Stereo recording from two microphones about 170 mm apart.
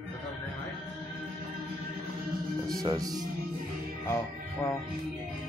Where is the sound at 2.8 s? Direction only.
20° right (ahead or behind).